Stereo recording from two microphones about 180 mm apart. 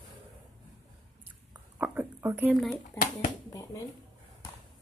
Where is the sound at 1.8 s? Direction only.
10° right (ahead or behind).